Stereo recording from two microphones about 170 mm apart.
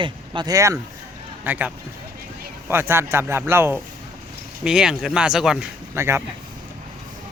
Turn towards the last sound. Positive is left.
turn(degrees=-15)  # may be behind; listen again after turning